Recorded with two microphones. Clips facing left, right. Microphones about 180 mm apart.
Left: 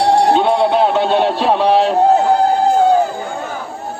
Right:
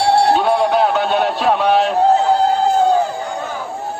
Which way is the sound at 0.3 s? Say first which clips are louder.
Left 2 dB; 25° left (ahead or behind).